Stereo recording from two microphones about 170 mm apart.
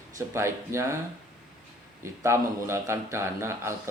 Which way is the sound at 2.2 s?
15° right (ahead or behind).